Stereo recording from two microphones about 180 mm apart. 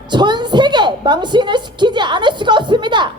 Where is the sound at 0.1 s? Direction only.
25° right (ahead or behind).